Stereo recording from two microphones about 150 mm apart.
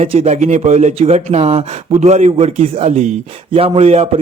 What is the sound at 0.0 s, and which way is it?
Speech, 45° right (ahead or behind).